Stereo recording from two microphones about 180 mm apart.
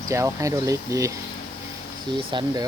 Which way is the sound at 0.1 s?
15° right (ahead or behind).